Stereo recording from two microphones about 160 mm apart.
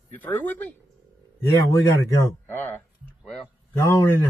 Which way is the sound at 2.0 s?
15° left (ahead or behind).